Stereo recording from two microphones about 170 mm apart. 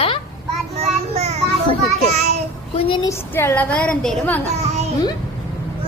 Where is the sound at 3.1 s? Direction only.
10° left (ahead or behind).